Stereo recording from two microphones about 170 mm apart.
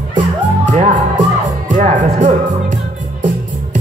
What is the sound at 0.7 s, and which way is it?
Music, 50° right (ahead or behind).